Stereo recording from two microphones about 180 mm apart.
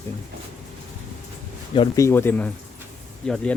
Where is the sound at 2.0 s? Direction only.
15° left (ahead or behind).